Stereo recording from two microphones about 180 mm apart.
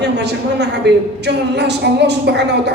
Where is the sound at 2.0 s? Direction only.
70° right (ahead or behind).